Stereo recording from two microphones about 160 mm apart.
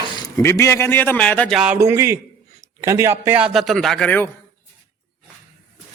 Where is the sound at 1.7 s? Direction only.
15° right (ahead or behind); by 4.3 s 10° left (ahead or behind).